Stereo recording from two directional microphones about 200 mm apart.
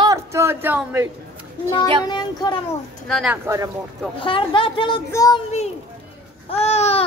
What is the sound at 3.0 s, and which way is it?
Speech, centre (ahead or behind).